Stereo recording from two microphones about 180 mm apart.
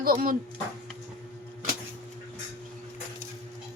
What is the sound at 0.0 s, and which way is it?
Speech, 55° right (ahead or behind).